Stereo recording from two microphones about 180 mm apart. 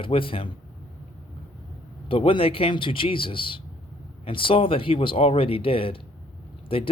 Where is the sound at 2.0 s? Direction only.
30° left (ahead or behind).